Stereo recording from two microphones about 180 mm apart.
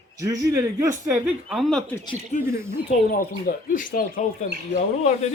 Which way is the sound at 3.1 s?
50° left (ahead or behind).